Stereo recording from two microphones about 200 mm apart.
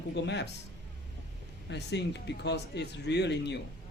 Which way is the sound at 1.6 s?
60° left (ahead or behind).